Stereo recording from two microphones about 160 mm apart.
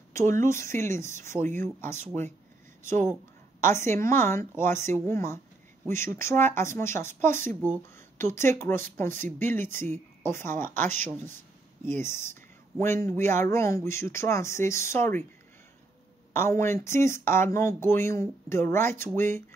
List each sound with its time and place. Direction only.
0.1 s speech: 15° left (ahead or behind)
3.6 s speech: 15° left (ahead or behind)
16.3 s speech: 15° left (ahead or behind)